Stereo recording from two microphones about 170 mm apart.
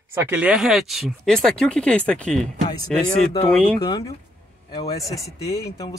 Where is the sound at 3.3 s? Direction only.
20° left (ahead or behind).